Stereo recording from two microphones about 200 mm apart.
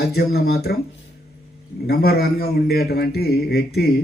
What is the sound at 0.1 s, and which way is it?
Speech, 50° left (ahead or behind).